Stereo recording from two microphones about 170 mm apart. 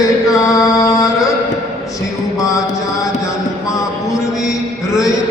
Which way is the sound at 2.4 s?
20° left (ahead or behind).